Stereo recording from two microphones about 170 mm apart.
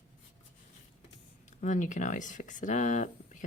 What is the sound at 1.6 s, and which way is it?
Speech, 45° left (ahead or behind).